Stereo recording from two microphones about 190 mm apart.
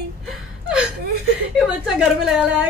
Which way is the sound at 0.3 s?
5° right (ahead or behind).